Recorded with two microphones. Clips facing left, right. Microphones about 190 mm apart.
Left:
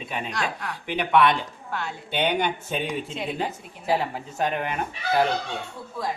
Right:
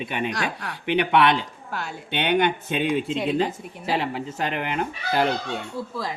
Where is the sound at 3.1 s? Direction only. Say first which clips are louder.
Right 6 dB; 85° right.